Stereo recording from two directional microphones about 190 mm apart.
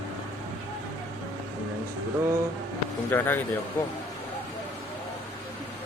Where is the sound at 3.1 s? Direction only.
10° left (ahead or behind).